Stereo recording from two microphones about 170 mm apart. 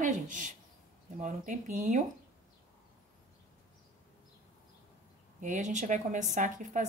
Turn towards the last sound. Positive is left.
turn(degrees=-50)  # may be behind; listen again after turning